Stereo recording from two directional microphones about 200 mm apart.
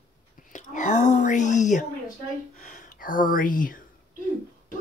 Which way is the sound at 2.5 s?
40° left (ahead or behind).